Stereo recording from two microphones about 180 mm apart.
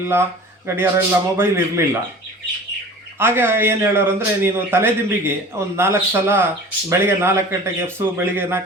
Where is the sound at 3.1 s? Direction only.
10° right (ahead or behind).